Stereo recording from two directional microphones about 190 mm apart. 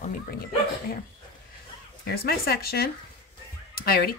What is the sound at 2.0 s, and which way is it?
Speech, 55° left (ahead or behind).